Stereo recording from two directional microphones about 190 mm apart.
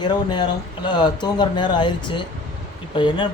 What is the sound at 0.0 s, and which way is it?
Speech, 20° left (ahead or behind).